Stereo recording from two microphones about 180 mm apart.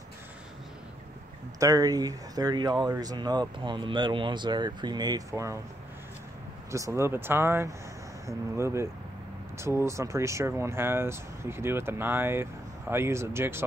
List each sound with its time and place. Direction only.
1.6 s speech: 20° right (ahead or behind)
6.7 s speech: 15° right (ahead or behind)